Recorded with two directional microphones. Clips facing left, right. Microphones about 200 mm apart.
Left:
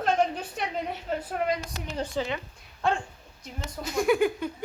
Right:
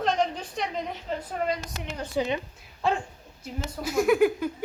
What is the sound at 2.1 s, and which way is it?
Speech, 20° right (ahead or behind).